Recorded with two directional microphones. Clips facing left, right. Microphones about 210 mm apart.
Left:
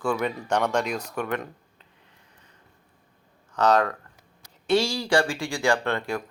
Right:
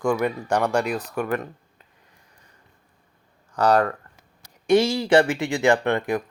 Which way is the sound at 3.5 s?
10° right (ahead or behind).